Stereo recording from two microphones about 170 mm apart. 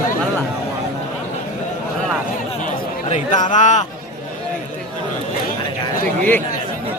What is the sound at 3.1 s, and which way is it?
Speech, 45° left (ahead or behind).